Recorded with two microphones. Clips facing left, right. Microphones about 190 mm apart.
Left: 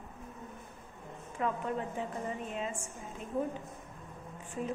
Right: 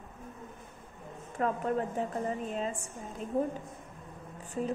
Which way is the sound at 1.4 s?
40° right (ahead or behind).